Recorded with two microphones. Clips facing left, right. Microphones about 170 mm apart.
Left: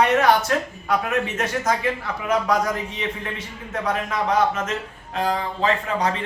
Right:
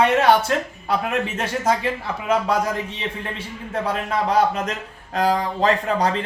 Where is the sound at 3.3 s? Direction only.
30° right (ahead or behind).